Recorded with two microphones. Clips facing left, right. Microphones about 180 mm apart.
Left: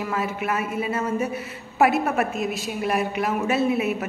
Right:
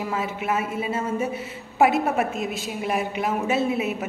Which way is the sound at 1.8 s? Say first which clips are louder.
Even; 25° right (ahead or behind).